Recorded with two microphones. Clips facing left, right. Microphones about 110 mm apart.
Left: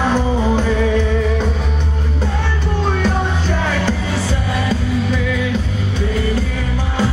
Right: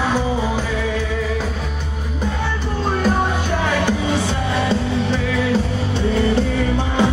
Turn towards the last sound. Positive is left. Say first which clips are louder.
# right 1 dB
turn(degrees=-30)  # may be behind; listen again after turning